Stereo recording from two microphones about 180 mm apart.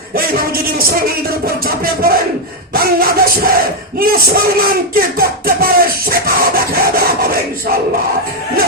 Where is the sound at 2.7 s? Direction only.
55° right (ahead or behind).